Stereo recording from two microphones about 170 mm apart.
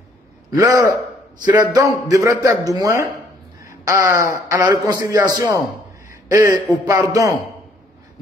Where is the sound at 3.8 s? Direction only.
20° right (ahead or behind).